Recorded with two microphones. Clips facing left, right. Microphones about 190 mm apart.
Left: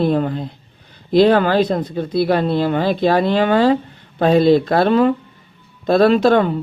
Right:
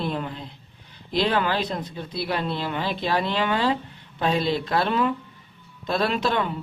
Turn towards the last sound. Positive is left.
turn(degrees=45)  # may be behind; listen again after turning